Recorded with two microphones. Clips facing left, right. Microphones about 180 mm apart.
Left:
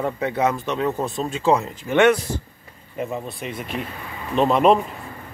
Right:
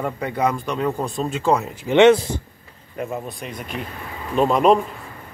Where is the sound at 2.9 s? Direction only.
Centre (ahead or behind).